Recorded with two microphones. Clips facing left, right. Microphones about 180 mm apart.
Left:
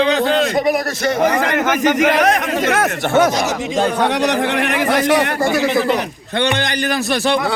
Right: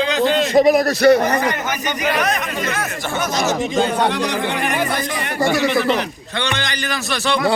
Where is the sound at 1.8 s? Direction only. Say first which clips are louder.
Left 7 dB; 90° left.